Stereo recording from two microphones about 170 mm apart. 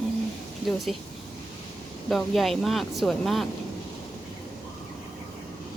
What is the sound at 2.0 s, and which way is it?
Speech, centre (ahead or behind).